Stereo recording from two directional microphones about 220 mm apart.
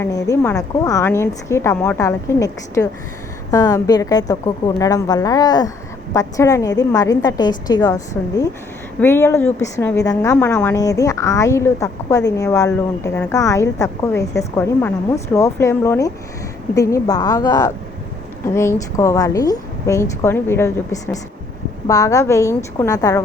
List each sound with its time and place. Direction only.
0.0 s a woman's voice: 15° left (ahead or behind)